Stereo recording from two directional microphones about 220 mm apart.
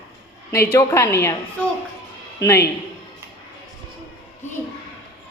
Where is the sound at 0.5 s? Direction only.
10° left (ahead or behind).